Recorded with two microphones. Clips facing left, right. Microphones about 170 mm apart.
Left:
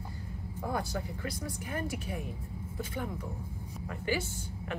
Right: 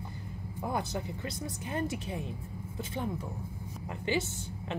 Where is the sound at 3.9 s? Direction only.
25° right (ahead or behind).